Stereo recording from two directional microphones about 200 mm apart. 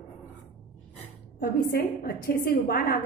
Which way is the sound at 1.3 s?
50° left (ahead or behind).